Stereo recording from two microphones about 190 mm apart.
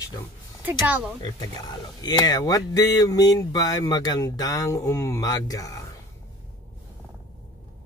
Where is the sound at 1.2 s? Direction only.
20° left (ahead or behind).